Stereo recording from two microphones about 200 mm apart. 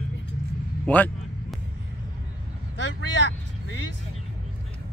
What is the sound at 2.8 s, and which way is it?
Vehicle, 65° left (ahead or behind).